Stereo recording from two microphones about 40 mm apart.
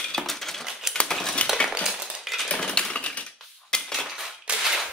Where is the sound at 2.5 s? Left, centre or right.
Left.